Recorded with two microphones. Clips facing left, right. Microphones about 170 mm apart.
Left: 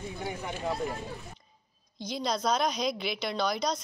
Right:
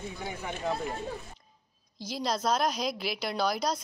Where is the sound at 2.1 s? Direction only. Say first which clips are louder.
Even; 5° right (ahead or behind).